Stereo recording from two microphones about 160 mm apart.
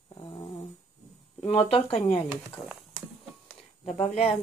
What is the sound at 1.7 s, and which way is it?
Speech, 5° left (ahead or behind).